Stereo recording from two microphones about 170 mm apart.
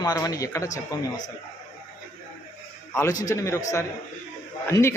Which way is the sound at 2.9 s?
20° left (ahead or behind).